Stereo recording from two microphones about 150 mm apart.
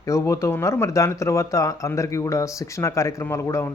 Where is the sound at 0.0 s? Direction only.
20° left (ahead or behind).